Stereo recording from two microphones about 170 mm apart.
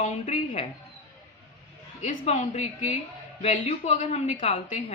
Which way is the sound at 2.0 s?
45° left (ahead or behind).